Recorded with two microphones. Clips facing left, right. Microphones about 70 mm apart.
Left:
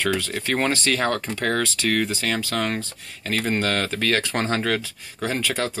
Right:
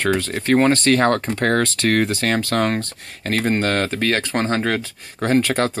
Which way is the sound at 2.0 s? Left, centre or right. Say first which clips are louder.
Right 5 dB; right.